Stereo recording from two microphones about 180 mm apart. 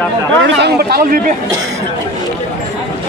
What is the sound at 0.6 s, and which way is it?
Speech, 65° right (ahead or behind).